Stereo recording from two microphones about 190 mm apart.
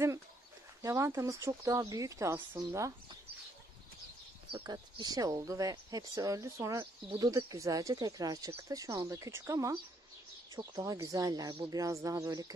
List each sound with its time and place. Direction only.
0.8 s speech: 15° right (ahead or behind)
4.5 s speech: 25° right (ahead or behind)